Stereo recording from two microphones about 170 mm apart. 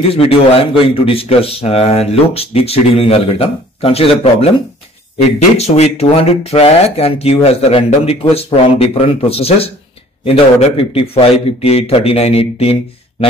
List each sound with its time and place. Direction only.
0.1 s a man's voice: 35° left (ahead or behind)
5.6 s a man's voice: 40° left (ahead or behind)